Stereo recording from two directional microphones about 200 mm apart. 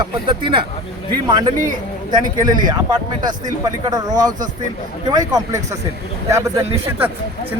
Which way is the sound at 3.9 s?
20° right (ahead or behind).